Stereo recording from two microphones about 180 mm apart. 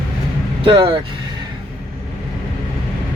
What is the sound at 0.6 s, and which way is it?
Speech, 25° right (ahead or behind).